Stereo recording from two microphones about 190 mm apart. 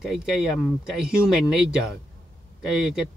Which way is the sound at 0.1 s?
Centre (ahead or behind).